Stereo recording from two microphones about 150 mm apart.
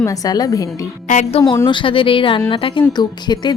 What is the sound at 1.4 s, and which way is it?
A woman's voice, 25° left (ahead or behind).